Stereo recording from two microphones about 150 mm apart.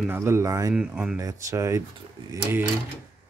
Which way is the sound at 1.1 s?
20° right (ahead or behind).